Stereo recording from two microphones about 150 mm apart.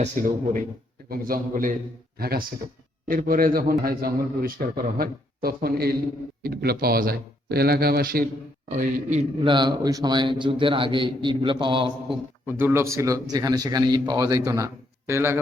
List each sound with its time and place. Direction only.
1.1 s a man's voice: 70° right (ahead or behind)
2.1 s speech: 90° right
3.1 s a man's voice: 70° right (ahead or behind); by 8.2 s 90° right
8.7 s a man's voice: 55° right (ahead or behind)
9.4 s a man's voice: 30° right (ahead or behind)
12.5 s a man's voice: 15° right (ahead or behind)